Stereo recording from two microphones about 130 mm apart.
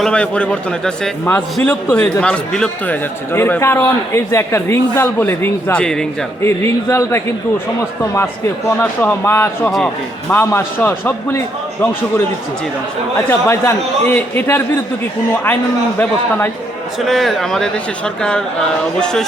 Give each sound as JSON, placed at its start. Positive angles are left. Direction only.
{"t": 0.0, "sound": "a man's voice", "side_deg": 5}
{"t": 6.4, "sound": "speech", "side_deg": 20}
{"t": 8.8, "sound": "a man's voice", "side_deg": 15}
{"t": 9.7, "sound": "a man's voice", "side_deg": 5}
{"t": 10.3, "sound": "a man's voice", "side_deg": 20}
{"t": 16.0, "sound": "a man's voice", "side_deg": 15}
{"t": 17.0, "sound": "a man's voice", "side_deg": 0}